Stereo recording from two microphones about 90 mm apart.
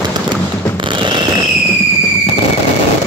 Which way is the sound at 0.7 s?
65° right (ahead or behind).